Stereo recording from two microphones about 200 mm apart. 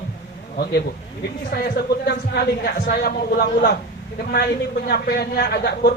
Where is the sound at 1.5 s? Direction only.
50° left (ahead or behind).